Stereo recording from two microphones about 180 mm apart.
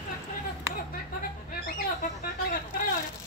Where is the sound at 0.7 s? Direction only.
50° left (ahead or behind).